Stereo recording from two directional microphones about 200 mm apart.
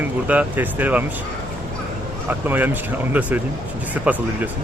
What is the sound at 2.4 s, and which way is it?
Speech, 10° right (ahead or behind).